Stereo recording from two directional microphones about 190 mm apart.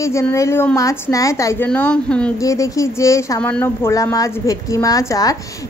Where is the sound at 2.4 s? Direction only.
15° left (ahead or behind).